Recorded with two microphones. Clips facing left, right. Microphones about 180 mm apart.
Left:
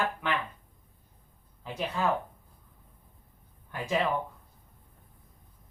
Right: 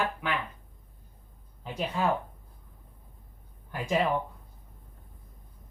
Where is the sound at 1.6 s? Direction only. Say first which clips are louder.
Right 1 dB; 10° right (ahead or behind).